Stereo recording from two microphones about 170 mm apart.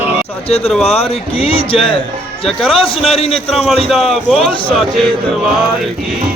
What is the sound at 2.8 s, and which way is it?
Speech, 35° left (ahead or behind).